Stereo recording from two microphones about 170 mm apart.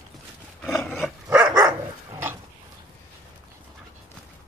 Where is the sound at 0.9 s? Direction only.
5° right (ahead or behind).